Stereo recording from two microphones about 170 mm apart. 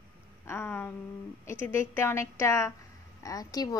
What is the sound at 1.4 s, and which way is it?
A woman's voice, 15° left (ahead or behind).